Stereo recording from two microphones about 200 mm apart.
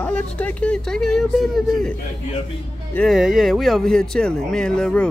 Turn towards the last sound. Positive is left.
turn(degrees=5)  # may be behind; listen again after turning